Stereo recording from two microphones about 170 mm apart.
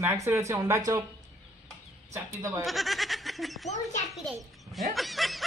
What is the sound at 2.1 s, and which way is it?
Speech, 20° right (ahead or behind).